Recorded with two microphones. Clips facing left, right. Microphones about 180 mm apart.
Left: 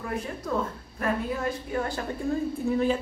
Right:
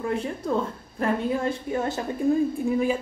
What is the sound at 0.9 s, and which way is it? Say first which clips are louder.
A woman's voice: right 4 dB; 25° right (ahead or behind).